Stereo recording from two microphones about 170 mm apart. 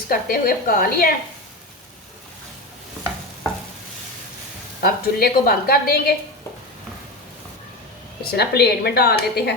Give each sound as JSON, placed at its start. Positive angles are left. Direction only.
{"t": 0.1, "sound": "a woman's voice", "side_deg": 60}
{"t": 4.8, "sound": "a woman's voice", "side_deg": 60}
{"t": 8.2, "sound": "a woman's voice", "side_deg": 70}